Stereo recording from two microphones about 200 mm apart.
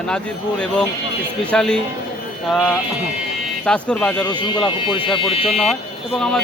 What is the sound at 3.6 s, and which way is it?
Speech, 5° left (ahead or behind).